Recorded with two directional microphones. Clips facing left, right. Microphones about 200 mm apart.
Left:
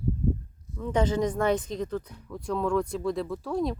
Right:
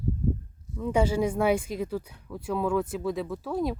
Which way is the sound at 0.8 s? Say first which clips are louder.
Right 1 dB; 10° right (ahead or behind).